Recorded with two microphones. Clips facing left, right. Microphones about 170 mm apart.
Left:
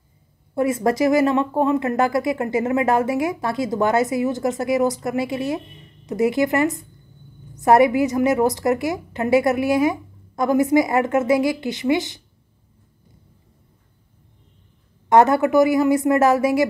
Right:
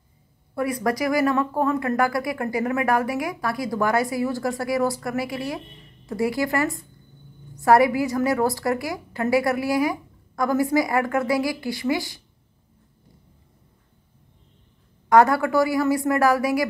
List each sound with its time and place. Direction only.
0.6 s speech: 25° left (ahead or behind)
15.0 s speech: 20° left (ahead or behind)